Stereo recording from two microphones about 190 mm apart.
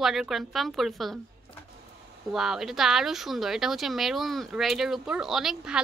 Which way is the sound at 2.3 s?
Centre (ahead or behind).